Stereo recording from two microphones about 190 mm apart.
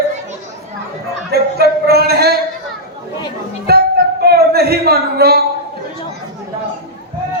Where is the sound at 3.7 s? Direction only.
55° right (ahead or behind).